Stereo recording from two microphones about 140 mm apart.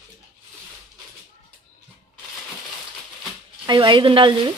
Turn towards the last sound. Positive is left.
turn(degrees=-35)  # may be behind; listen again after turning